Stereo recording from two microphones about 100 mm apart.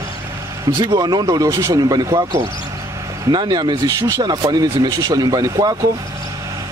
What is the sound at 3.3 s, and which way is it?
Speech, 45° right (ahead or behind).